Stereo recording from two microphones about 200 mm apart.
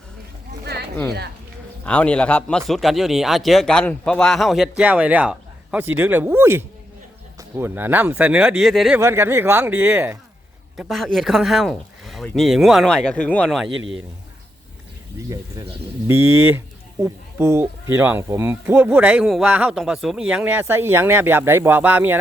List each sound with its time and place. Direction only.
0.6 s a sound: 55° right (ahead or behind)
1.8 s speech: 5° left (ahead or behind)
9.0 s speech: 10° right (ahead or behind)
10.8 s speech: centre (ahead or behind)
16.5 s speech: 10° right (ahead or behind)